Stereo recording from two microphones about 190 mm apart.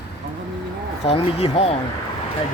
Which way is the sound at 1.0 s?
35° left (ahead or behind).